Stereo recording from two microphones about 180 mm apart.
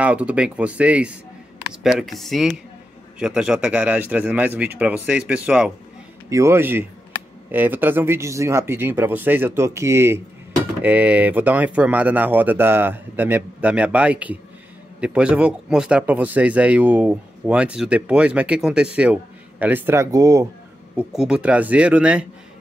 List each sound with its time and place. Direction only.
0.0 s speech: 5° right (ahead or behind)
20.9 s speech: 5° right (ahead or behind)